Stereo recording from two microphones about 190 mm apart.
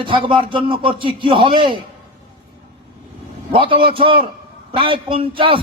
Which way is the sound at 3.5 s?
25° right (ahead or behind).